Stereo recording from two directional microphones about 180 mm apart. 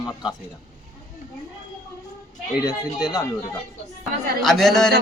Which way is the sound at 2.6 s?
20° left (ahead or behind).